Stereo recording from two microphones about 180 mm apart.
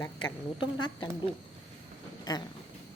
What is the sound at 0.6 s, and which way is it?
Speech, 25° left (ahead or behind).